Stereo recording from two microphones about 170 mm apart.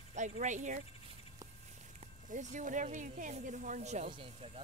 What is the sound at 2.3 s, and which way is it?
Speech, 45° right (ahead or behind).